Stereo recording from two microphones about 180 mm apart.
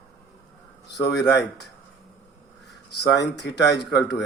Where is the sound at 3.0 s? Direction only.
75° left (ahead or behind).